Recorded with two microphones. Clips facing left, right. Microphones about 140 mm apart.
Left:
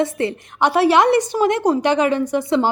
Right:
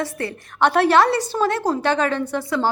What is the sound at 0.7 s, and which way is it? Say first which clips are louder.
A woman's voice: left 2 dB; 10° left (ahead or behind).